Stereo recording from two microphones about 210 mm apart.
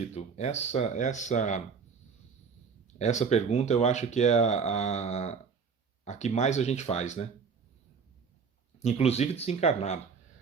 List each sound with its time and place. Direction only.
0.1 s speech: 30° left (ahead or behind)
2.8 s speech: 35° left (ahead or behind)
8.8 s speech: 30° left (ahead or behind)